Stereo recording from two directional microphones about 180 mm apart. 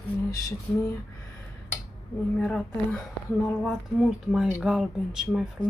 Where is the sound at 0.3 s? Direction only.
20° left (ahead or behind).